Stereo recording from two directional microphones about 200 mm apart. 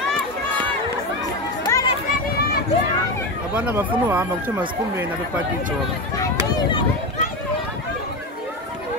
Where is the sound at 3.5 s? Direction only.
5° right (ahead or behind).